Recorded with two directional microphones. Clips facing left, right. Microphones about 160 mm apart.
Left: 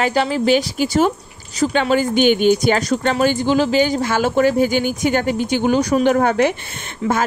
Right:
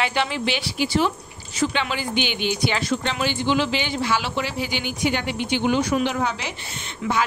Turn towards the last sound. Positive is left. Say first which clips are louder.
# left 6 dB
turn(degrees=35)  # may be behind; listen again after turning